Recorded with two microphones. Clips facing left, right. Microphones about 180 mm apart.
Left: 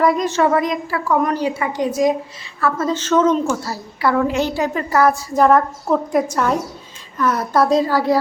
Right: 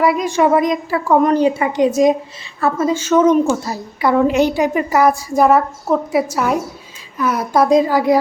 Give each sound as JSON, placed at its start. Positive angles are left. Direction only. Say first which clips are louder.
{"t": 0.0, "sound": "a woman's voice", "louder": "right 1 dB", "side_deg": -10}
{"t": 2.7, "sound": "a woman's voice", "louder": "right 3 dB", "side_deg": -10}